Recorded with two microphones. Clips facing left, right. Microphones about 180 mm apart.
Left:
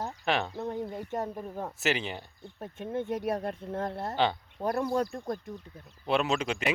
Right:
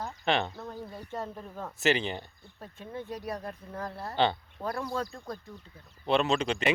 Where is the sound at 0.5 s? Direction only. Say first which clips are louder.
Left 6 dB; 20° left (ahead or behind).